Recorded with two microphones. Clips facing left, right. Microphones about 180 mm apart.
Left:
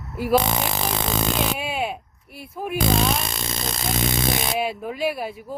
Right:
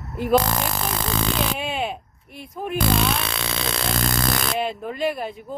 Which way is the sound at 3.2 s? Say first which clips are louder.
Right 2 dB; 75° right (ahead or behind).